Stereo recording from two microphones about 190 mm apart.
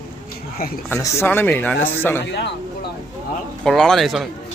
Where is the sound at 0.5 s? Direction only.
50° left (ahead or behind).